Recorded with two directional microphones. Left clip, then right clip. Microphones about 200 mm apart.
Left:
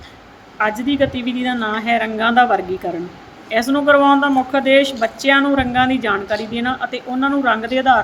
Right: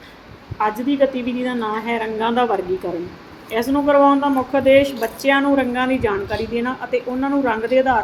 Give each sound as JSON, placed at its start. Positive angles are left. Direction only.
{"t": 0.6, "sound": "a woman's voice", "side_deg": 15}